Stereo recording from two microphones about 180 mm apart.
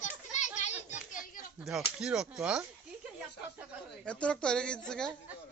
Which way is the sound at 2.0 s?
5° right (ahead or behind).